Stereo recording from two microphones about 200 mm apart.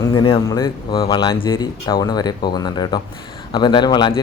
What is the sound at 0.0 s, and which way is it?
Speech, 20° left (ahead or behind).